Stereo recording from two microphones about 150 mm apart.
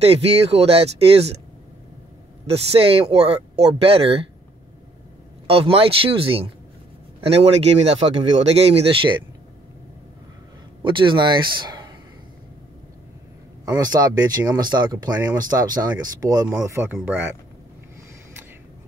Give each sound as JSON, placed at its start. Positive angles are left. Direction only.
{"t": 0.0, "sound": "speech", "side_deg": -40}
{"t": 2.4, "sound": "speech", "side_deg": -40}
{"t": 5.5, "sound": "speech", "side_deg": -40}
{"t": 10.8, "sound": "speech", "side_deg": -35}
{"t": 13.7, "sound": "speech", "side_deg": -25}